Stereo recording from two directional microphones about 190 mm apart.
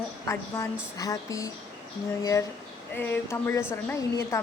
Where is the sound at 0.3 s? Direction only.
15° left (ahead or behind).